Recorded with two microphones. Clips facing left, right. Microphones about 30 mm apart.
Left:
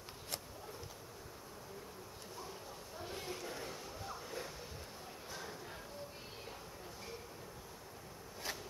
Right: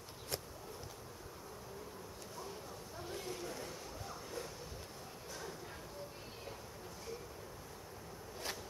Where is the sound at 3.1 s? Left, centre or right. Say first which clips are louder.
Right 1 dB; centre.